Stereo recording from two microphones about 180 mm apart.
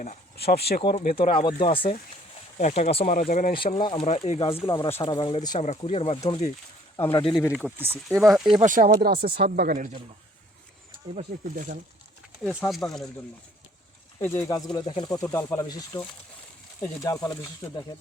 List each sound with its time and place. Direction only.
0.3 s speech: 60° left (ahead or behind)
1.4 s speech: 30° left (ahead or behind); by 3.5 s 45° left (ahead or behind)
3.5 s speech: 30° left (ahead or behind)
4.6 s speech: 20° left (ahead or behind)
5.5 s speech: 40° left (ahead or behind)
7.5 s speech: 10° right (ahead or behind)
8.0 s speech: centre (ahead or behind)
8.6 s speech: 45° right (ahead or behind)
11.1 s speech: 40° right (ahead or behind)
12.4 s speech: centre (ahead or behind)
14.2 s speech: 10° left (ahead or behind)